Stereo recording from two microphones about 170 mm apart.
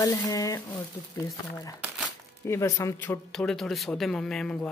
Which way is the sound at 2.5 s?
15° left (ahead or behind).